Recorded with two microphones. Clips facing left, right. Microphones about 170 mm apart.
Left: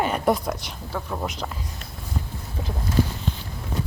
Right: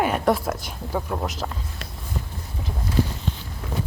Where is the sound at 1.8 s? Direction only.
90° right.